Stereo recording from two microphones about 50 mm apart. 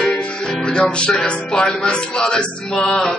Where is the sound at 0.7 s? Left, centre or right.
Centre.